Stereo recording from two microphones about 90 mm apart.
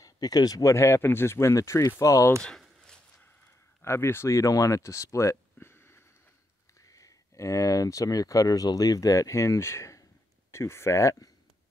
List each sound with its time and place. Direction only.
0.0 s speech: 45° left (ahead or behind)
2.8 s a sound: 10° left (ahead or behind)
3.8 s speech: 30° left (ahead or behind)
6.8 s speech: 40° left (ahead or behind)